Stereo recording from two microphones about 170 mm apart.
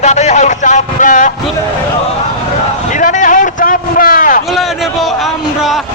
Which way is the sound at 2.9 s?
45° left (ahead or behind).